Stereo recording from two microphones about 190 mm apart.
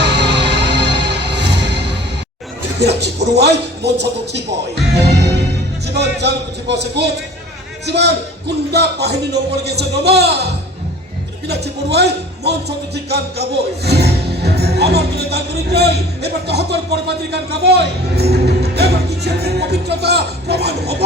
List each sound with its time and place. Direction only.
0.0 s music: 65° right (ahead or behind)
2.8 s speech: 60° right (ahead or behind)
11.4 s speech: 60° right (ahead or behind)